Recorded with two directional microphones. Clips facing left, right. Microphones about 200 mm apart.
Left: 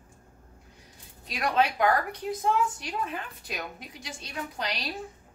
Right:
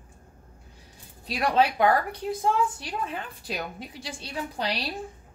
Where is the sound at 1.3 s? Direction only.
30° right (ahead or behind).